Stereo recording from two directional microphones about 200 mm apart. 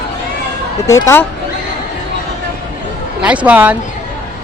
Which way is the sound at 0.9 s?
15° left (ahead or behind).